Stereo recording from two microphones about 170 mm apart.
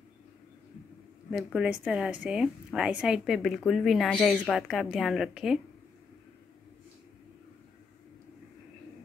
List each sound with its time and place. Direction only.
1.3 s a woman's voice: 5° right (ahead or behind)